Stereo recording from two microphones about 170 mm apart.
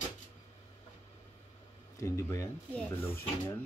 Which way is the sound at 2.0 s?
15° left (ahead or behind).